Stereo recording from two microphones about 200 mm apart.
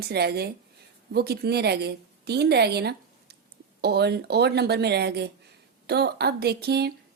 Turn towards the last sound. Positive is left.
turn(degrees=-55)  # may be behind; listen again after turning